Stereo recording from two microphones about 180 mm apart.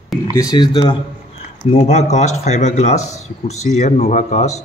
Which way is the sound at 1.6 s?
40° left (ahead or behind).